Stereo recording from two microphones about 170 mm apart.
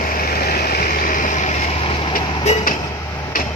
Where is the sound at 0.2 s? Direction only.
60° left (ahead or behind).